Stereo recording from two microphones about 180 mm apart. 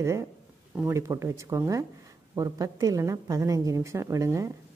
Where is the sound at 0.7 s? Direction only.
15° right (ahead or behind).